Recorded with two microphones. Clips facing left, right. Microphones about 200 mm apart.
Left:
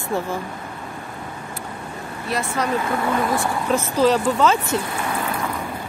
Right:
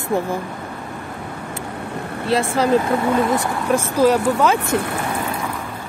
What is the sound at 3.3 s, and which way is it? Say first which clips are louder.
Speech: right 2 dB; 10° right (ahead or behind).